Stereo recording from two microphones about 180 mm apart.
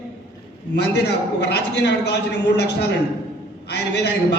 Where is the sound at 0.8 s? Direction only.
65° left (ahead or behind).